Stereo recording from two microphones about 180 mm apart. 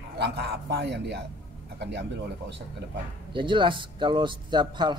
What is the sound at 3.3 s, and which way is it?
Speech, 25° right (ahead or behind).